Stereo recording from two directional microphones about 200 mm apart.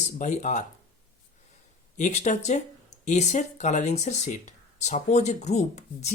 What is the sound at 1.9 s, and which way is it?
Speech, 35° left (ahead or behind).